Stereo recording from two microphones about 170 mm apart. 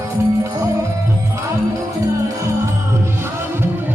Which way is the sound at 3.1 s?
15° right (ahead or behind).